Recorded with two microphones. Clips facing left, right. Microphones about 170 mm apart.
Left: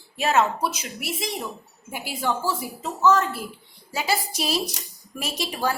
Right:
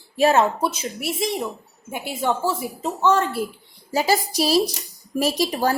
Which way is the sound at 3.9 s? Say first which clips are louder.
Right 6 dB; 40° right (ahead or behind).